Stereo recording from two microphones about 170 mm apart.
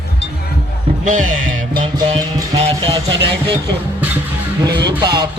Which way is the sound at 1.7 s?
25° right (ahead or behind).